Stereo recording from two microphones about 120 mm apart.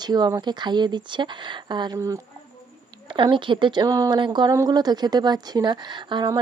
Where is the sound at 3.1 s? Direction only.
45° right (ahead or behind).